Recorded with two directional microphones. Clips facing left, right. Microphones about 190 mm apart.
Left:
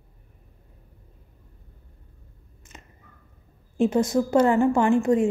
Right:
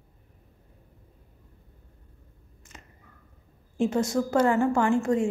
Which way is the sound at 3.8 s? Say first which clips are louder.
Left 4 dB; 20° left (ahead or behind).